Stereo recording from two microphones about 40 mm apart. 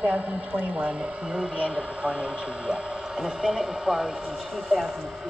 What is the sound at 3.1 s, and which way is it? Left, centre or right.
Speech, centre.